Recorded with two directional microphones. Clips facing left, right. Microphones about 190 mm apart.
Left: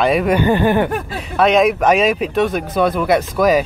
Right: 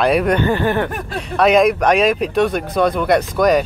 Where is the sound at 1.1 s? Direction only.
Centre (ahead or behind).